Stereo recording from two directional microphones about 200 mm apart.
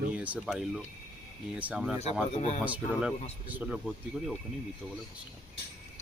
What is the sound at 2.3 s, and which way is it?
Speech, 30° left (ahead or behind).